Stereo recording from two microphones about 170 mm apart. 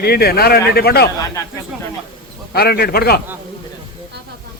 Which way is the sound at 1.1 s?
20° left (ahead or behind).